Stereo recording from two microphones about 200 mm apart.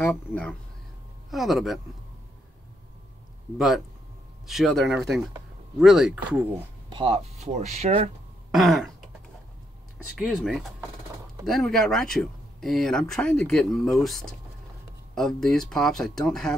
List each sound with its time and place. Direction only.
0.0 s speech: 10° left (ahead or behind)
3.5 s speech: centre (ahead or behind)
6.9 s speech: 30° right (ahead or behind)
8.5 s throat clearing: centre (ahead or behind)
10.1 s speech: centre (ahead or behind)